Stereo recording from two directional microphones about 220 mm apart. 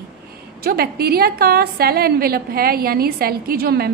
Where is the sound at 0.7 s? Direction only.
45° right (ahead or behind).